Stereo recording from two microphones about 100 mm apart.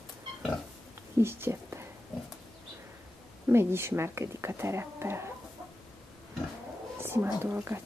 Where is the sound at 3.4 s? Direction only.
25° right (ahead or behind).